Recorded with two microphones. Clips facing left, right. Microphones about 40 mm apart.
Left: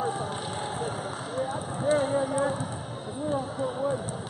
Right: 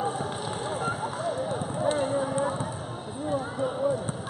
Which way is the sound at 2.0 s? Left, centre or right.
Centre.